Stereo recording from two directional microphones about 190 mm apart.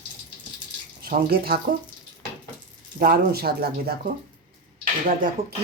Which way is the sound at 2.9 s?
50° right (ahead or behind).